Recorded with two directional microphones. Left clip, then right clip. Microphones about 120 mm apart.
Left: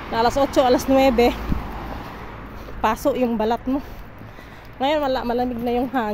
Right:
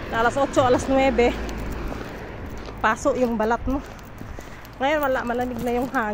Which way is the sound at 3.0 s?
45° left (ahead or behind).